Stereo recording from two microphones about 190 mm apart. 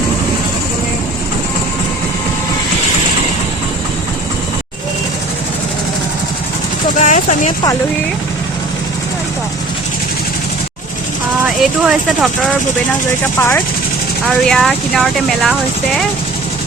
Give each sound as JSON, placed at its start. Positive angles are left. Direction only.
{"t": 6.9, "sound": "vehicle", "side_deg": 40}
{"t": 11.4, "sound": "speech", "side_deg": 0}
{"t": 13.1, "sound": "speech", "side_deg": 10}